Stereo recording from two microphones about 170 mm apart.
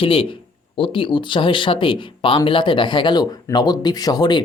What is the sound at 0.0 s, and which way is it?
Speech, 30° left (ahead or behind).